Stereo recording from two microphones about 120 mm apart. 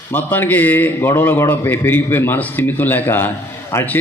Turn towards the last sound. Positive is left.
turn(degrees=15)  # may be behind; listen again after turning